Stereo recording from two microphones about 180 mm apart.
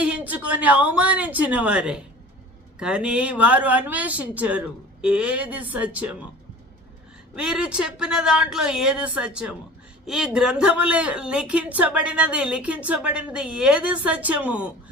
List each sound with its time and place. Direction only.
0.0 s a woman's voice: 10° right (ahead or behind)
7.3 s a woman's voice: 5° right (ahead or behind)